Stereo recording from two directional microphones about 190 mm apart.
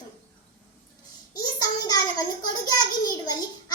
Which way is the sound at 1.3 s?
20° left (ahead or behind).